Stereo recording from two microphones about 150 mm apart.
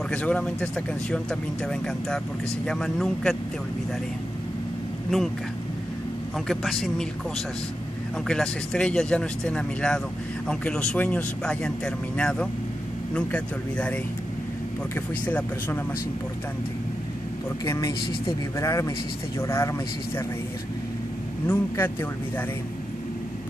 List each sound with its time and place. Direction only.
0.1 s speech: 10° left (ahead or behind)
6.4 s speech: centre (ahead or behind)
8.3 s speech: 5° left (ahead or behind)
15.2 s speech: 10° left (ahead or behind)
17.6 s speech: 20° left (ahead or behind)
21.5 s speech: 15° left (ahead or behind)